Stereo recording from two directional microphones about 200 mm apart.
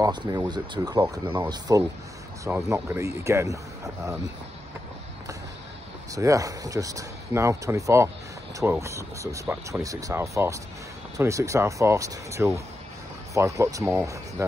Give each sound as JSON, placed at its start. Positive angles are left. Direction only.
{"t": 0.0, "sound": "speech", "side_deg": -20}
{"t": 6.1, "sound": "speech", "side_deg": -15}